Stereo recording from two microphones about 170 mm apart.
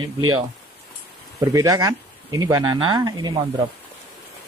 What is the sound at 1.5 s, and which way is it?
Speech, 20° right (ahead or behind).